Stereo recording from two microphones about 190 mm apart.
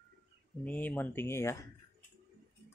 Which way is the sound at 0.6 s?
10° left (ahead or behind).